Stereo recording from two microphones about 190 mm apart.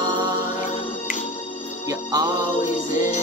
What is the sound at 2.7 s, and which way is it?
Music, 40° left (ahead or behind).